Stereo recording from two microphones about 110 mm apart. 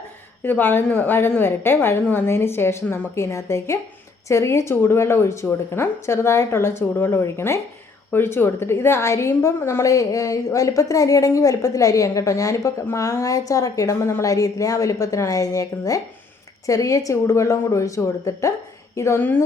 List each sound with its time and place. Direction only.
0.4 s a woman's voice: 15° left (ahead or behind)